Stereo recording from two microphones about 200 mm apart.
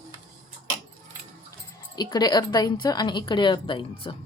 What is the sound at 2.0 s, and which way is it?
Speech, 20° left (ahead or behind).